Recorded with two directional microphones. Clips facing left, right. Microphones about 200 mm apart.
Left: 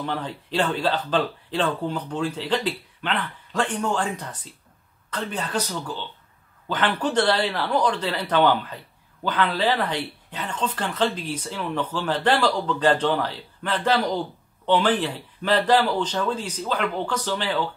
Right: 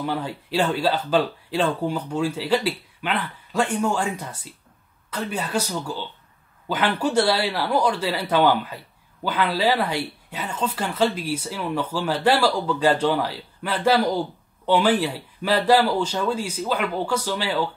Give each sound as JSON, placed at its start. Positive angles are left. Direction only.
{"t": 0.0, "sound": "speech", "side_deg": -10}